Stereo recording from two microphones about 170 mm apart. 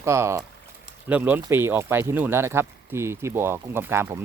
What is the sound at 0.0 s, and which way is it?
Speech, 15° right (ahead or behind).